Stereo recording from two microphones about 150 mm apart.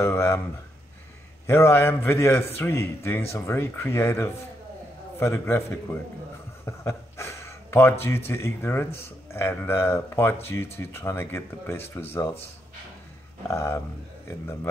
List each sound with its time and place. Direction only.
0.0 s a man's voice: 15° left (ahead or behind)
1.5 s a man's voice: 15° left (ahead or behind)
13.5 s a man's voice: 20° left (ahead or behind)